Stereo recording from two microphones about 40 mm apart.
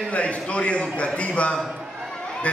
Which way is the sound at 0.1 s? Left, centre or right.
Left.